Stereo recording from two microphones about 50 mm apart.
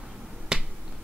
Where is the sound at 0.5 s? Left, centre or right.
Centre.